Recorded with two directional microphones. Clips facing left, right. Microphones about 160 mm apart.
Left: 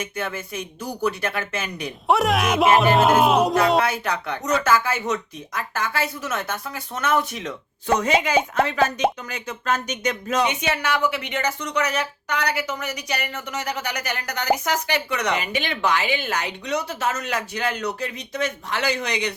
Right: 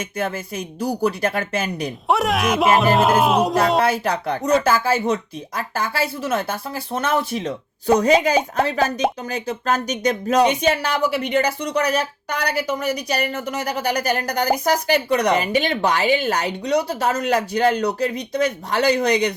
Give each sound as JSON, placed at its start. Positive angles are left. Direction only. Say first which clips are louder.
{"t": 0.0, "sound": "speech", "louder": "right 4 dB", "side_deg": -35}
{"t": 2.0, "sound": "speech", "louder": "even", "side_deg": 0}
{"t": 3.8, "sound": "speech", "louder": "right 3 dB", "side_deg": -35}